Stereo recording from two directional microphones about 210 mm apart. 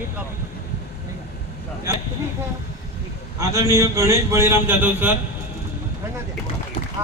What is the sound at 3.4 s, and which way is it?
A man's voice, 15° right (ahead or behind).